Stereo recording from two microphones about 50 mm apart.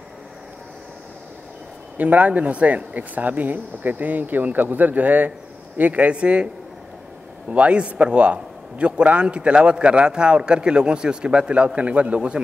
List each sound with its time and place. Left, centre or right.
2.0 s a man's voice: right